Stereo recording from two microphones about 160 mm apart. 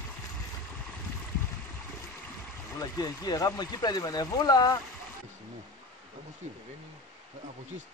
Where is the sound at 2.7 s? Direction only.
25° left (ahead or behind).